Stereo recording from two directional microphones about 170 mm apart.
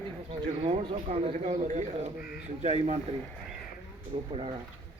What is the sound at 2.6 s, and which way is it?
Speech, 40° right (ahead or behind).